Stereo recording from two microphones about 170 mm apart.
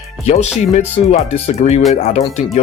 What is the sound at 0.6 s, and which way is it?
Speech, 40° left (ahead or behind).